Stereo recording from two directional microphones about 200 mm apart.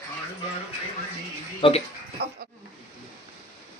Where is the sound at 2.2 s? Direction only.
55° right (ahead or behind).